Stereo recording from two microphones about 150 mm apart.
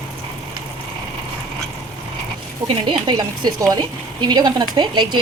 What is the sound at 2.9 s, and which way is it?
A woman's voice, 30° right (ahead or behind).